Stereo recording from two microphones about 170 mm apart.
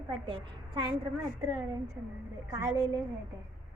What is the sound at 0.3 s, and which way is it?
Speech, 30° right (ahead or behind).